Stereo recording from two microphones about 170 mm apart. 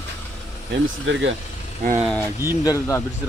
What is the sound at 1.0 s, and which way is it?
Speech, 90° right.